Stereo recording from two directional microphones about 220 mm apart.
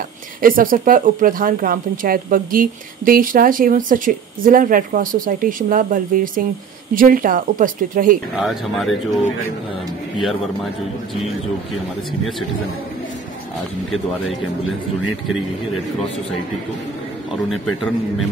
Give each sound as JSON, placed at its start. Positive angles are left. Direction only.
{"t": 0.4, "sound": "speech", "side_deg": -40}
{"t": 8.4, "sound": "speech", "side_deg": 0}
{"t": 17.3, "sound": "speech", "side_deg": 0}